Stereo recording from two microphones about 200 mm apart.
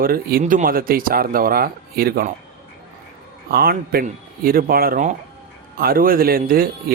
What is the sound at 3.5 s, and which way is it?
Speech, 50° right (ahead or behind).